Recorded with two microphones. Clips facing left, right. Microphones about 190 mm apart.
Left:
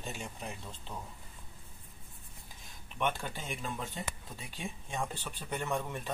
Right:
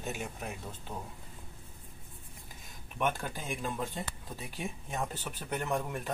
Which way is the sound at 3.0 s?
5° right (ahead or behind).